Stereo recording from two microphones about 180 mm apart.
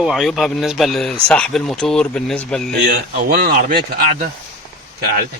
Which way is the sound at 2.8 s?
55° right (ahead or behind).